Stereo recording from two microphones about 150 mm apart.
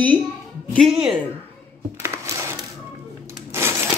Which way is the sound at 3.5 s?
15° right (ahead or behind).